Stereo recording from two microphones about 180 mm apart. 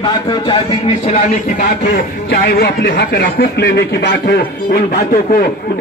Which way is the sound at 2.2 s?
60° left (ahead or behind).